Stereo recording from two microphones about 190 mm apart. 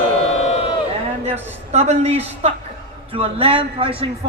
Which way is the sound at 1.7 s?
35° right (ahead or behind).